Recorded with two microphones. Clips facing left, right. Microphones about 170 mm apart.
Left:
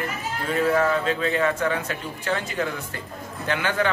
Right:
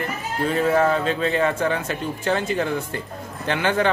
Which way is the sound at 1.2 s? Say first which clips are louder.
Right 2 dB; 25° right (ahead or behind).